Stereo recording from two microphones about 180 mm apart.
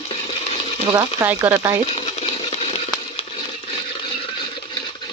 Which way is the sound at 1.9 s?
30° left (ahead or behind).